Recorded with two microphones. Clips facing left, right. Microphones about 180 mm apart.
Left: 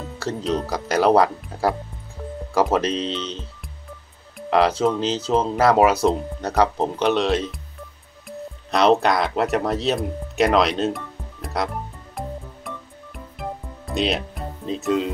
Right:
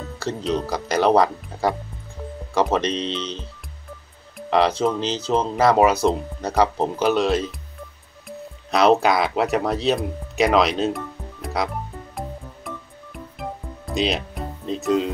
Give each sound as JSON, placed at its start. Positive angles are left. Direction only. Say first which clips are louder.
{"t": 0.2, "sound": "speech", "louder": "even", "side_deg": 0}
{"t": 11.4, "sound": "music", "louder": "even", "side_deg": 0}